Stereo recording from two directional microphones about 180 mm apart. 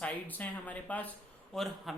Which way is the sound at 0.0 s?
10° left (ahead or behind).